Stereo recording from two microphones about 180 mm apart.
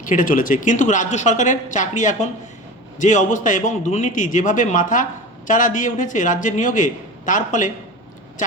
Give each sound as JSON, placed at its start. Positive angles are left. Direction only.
{"t": 0.0, "sound": "a man's voice", "side_deg": 45}